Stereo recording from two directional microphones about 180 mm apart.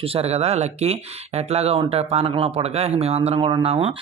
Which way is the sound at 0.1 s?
35° right (ahead or behind).